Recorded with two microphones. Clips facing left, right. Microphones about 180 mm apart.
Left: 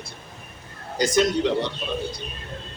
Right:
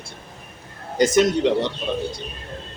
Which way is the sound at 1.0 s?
20° right (ahead or behind).